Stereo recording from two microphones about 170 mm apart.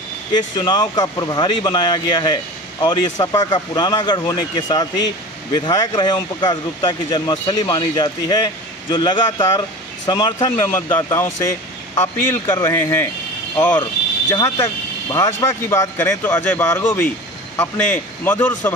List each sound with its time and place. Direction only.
0.3 s speech: 25° left (ahead or behind)
14.3 s speech: 20° left (ahead or behind)